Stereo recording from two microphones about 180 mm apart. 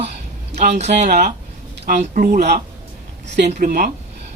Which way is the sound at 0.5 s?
40° right (ahead or behind).